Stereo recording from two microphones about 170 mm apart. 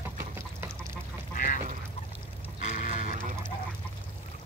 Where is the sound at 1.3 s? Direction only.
55° left (ahead or behind).